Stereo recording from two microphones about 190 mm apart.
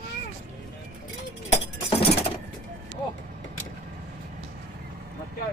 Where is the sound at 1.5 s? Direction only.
30° left (ahead or behind).